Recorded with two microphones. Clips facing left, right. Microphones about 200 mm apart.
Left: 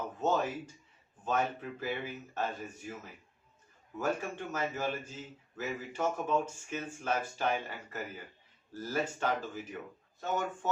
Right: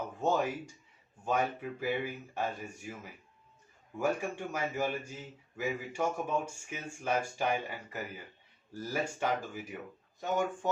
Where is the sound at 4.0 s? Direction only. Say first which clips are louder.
Right 2 dB; 10° right (ahead or behind).